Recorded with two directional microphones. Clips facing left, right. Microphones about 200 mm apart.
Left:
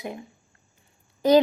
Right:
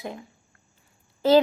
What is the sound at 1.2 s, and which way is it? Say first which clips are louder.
Speech: even; 15° left (ahead or behind).